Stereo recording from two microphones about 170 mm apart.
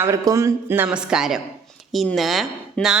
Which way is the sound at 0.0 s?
20° right (ahead or behind).